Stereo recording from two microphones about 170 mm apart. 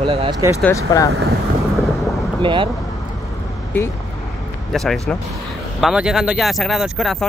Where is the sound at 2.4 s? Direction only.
30° right (ahead or behind).